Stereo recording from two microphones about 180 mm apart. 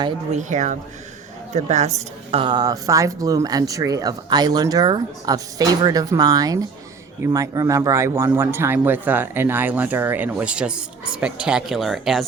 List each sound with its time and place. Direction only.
0.3 s a woman's voice: 40° right (ahead or behind)
2.3 s speech: 25° right (ahead or behind); by 12.2 s centre (ahead or behind)